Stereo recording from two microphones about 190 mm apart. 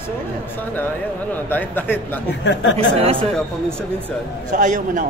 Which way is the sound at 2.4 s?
70° left (ahead or behind).